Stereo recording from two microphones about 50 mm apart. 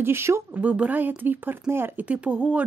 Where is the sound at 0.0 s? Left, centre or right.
Right.